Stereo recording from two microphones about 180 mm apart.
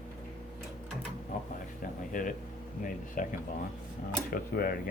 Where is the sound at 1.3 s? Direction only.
50° left (ahead or behind).